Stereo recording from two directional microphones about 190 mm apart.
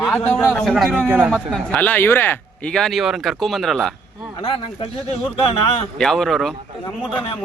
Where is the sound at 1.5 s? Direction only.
10° left (ahead or behind).